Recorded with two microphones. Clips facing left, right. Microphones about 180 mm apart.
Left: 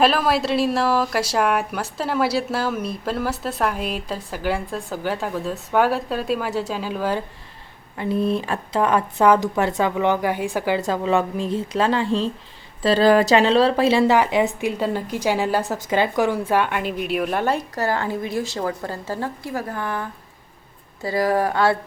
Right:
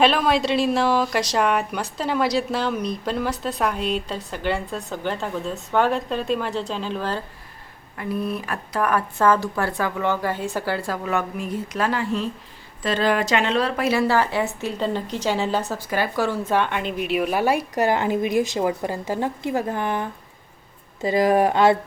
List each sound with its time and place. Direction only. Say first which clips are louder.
0.0 s a woman's voice: even; centre (ahead or behind)
7.9 s a woman's voice: left 5 dB; 25° left (ahead or behind); by 21.8 s 20° right (ahead or behind)